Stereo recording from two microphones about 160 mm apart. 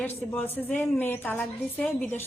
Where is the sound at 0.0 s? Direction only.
10° left (ahead or behind).